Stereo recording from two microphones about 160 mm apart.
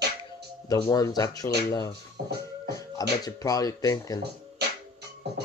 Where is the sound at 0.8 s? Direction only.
25° left (ahead or behind).